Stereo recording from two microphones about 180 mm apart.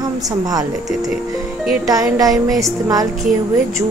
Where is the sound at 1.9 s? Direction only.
20° right (ahead or behind).